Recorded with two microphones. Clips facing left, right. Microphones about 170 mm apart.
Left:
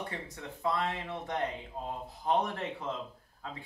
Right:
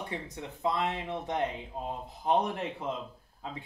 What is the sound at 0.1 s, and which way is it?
Speech, 20° right (ahead or behind).